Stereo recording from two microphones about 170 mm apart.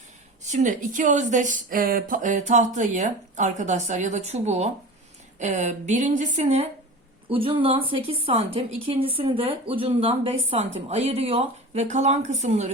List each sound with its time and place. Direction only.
0.4 s a woman's voice: 45° right (ahead or behind)